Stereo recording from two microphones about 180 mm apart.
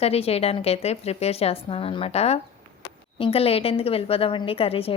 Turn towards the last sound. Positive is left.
turn(degrees=30)  # may be behind; listen again after turning